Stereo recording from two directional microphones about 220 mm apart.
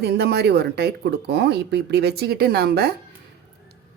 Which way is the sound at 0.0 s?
50° right (ahead or behind).